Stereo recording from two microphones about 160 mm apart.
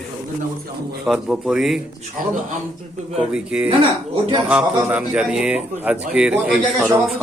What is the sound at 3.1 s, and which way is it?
A man's voice, 5° right (ahead or behind).